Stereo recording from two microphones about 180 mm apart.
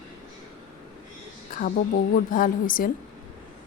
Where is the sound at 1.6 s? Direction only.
50° left (ahead or behind).